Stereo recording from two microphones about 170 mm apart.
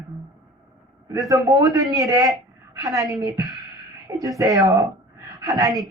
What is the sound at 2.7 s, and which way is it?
A woman's voice, 20° right (ahead or behind).